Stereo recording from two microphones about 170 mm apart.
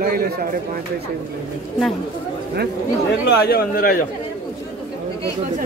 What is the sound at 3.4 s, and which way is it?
Speech, 65° left (ahead or behind).